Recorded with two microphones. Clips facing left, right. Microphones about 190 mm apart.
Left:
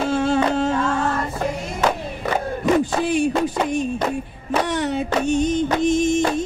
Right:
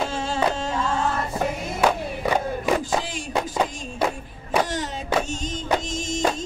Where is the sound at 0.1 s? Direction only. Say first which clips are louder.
Left 9 dB; 60° left (ahead or behind).